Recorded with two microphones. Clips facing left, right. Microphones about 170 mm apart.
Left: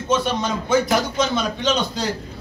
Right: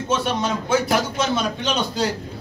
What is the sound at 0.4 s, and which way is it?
A man's voice, 5° right (ahead or behind).